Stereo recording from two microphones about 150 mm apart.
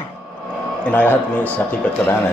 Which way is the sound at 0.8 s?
10° left (ahead or behind).